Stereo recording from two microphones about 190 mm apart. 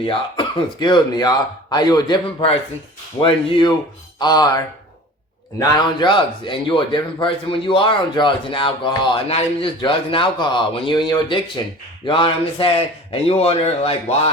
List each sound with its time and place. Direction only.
0.0 s a man's voice: 25° left (ahead or behind)